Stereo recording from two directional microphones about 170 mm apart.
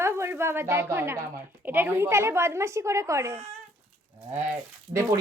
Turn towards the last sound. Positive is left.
turn(degrees=-15)  # may be behind; listen again after turning